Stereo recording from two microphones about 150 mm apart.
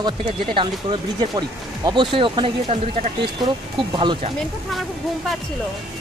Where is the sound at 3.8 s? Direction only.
35° right (ahead or behind).